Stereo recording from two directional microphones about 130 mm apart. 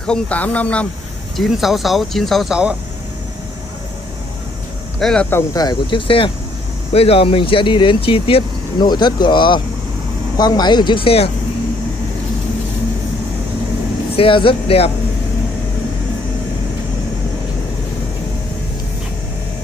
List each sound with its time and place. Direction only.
0.0 s speech: 10° left (ahead or behind)
1.3 s speech: centre (ahead or behind)
4.9 s speech: 5° left (ahead or behind)
5.3 s speech: 30° left (ahead or behind)
14.1 s speech: 45° left (ahead or behind)